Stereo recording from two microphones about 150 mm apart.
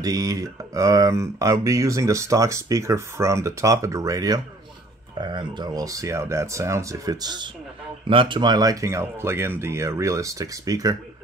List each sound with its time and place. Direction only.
0.0 s speech: 25° right (ahead or behind)